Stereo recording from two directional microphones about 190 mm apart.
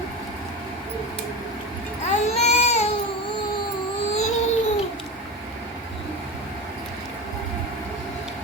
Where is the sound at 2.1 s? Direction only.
35° left (ahead or behind).